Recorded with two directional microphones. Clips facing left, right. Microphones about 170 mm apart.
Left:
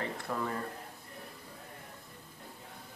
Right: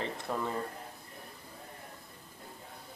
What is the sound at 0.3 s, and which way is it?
Speech, 25° right (ahead or behind).